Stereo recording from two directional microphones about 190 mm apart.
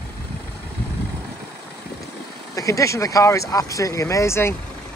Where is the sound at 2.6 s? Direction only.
15° left (ahead or behind).